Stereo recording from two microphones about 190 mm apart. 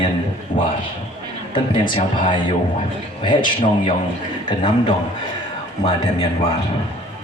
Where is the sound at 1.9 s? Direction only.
25° left (ahead or behind).